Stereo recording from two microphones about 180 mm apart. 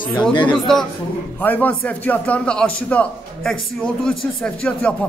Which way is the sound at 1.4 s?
10° left (ahead or behind).